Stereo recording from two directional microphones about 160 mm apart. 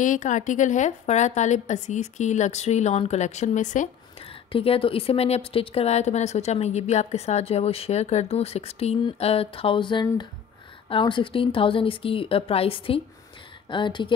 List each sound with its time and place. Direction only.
0.0 s a woman's voice: 50° left (ahead or behind)
4.5 s speech: 35° left (ahead or behind)